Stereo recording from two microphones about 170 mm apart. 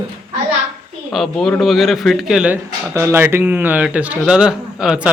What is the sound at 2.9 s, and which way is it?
Speech, 15° right (ahead or behind).